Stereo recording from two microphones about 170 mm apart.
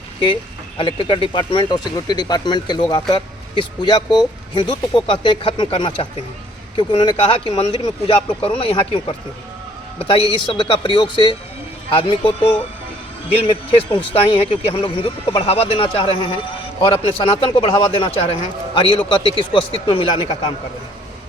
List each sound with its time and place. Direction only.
0.8 s a man's voice: 30° left (ahead or behind)
10.4 s a man's voice: 30° left (ahead or behind)
13.5 s a man's voice: 30° left (ahead or behind)